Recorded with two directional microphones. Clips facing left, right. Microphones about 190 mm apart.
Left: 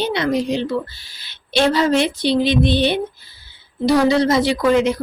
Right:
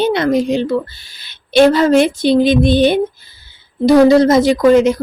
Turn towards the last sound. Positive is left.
turn(degrees=-45)  # may be behind; listen again after turning